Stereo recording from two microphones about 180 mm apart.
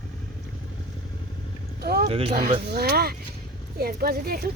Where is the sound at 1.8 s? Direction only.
60° right (ahead or behind).